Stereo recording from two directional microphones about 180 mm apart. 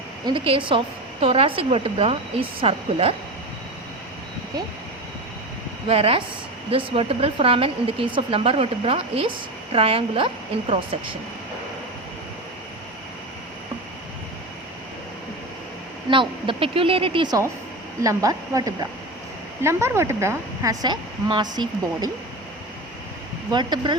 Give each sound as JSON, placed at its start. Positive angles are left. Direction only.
{"t": 0.3, "sound": "a woman's voice", "side_deg": -30}
{"t": 5.9, "sound": "speech", "side_deg": -35}
{"t": 16.0, "sound": "a woman's voice", "side_deg": -30}
{"t": 23.5, "sound": "a woman's voice", "side_deg": -25}